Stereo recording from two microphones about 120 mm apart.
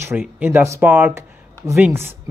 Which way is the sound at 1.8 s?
15° right (ahead or behind).